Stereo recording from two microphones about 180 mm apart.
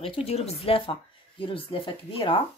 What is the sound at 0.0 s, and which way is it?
Speech, 30° left (ahead or behind).